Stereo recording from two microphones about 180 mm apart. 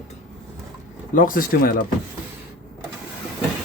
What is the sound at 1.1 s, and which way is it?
Speech, 50° left (ahead or behind).